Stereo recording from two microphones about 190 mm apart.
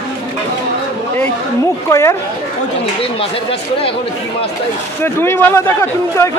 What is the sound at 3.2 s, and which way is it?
Speech, 30° left (ahead or behind).